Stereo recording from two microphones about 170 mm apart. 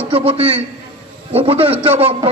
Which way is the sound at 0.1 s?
35° right (ahead or behind).